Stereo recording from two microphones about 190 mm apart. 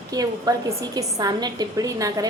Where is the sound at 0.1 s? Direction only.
20° right (ahead or behind).